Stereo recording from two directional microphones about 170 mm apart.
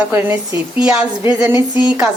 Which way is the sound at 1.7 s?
25° left (ahead or behind).